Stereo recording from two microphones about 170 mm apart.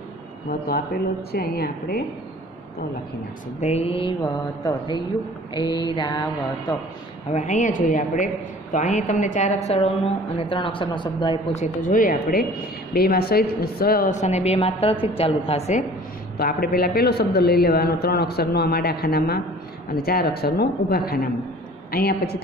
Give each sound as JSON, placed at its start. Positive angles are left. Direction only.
{"t": 0.5, "sound": "a man's voice", "side_deg": 65}
{"t": 3.6, "sound": "a woman's voice", "side_deg": 35}
{"t": 5.5, "sound": "a sound", "side_deg": 25}
{"t": 7.2, "sound": "a woman's voice", "side_deg": 45}
{"t": 11.5, "sound": "a woman's voice", "side_deg": 45}
{"t": 16.3, "sound": "a man's voice", "side_deg": 60}